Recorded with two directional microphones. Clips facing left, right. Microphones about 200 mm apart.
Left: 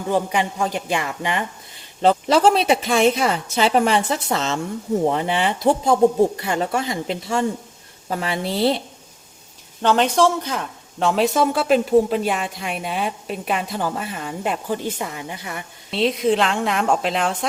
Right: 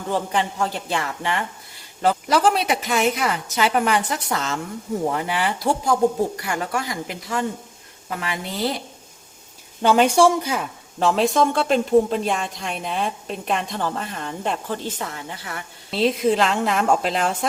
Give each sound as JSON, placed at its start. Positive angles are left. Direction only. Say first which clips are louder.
{"t": 0.1, "sound": "a woman's voice", "louder": "left 2 dB", "side_deg": 15}
{"t": 9.8, "sound": "speech", "louder": "right 1 dB", "side_deg": -10}
{"t": 15.9, "sound": "speech", "louder": "even", "side_deg": 0}